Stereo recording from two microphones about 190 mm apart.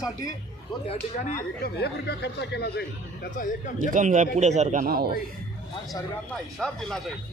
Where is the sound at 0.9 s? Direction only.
40° left (ahead or behind); by 2.8 s 60° left (ahead or behind).